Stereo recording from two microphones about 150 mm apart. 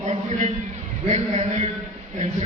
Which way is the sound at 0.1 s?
50° right (ahead or behind).